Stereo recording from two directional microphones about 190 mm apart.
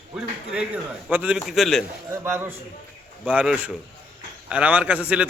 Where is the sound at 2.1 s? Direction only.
10° right (ahead or behind).